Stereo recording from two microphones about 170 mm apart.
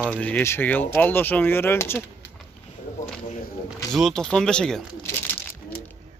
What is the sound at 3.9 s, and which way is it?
Speech, centre (ahead or behind).